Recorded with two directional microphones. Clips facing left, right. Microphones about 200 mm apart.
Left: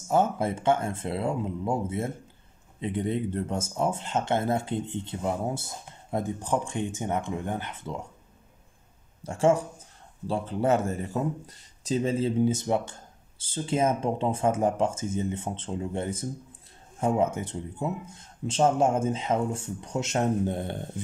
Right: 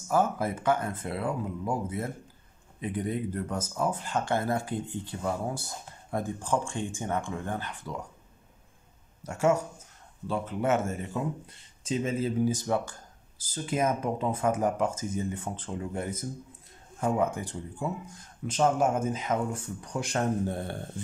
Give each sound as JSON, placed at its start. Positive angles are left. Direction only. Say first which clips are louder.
{"t": 0.1, "sound": "speech", "louder": "left 2 dB", "side_deg": 25}
{"t": 9.2, "sound": "speech", "louder": "left 3 dB", "side_deg": 30}